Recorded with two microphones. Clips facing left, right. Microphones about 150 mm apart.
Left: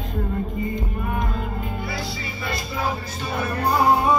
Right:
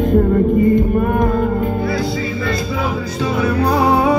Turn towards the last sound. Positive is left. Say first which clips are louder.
# right 5 dB
turn(degrees=-75)  # may be behind; listen again after turning